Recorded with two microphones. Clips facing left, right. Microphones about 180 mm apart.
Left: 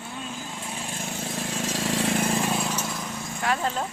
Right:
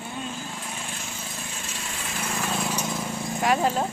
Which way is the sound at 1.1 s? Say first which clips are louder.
Left 7 dB; 85° left.